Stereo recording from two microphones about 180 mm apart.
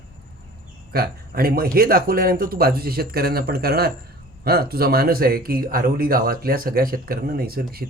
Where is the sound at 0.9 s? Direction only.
55° right (ahead or behind).